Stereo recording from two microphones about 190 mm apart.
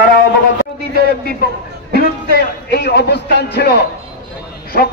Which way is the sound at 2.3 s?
60° left (ahead or behind).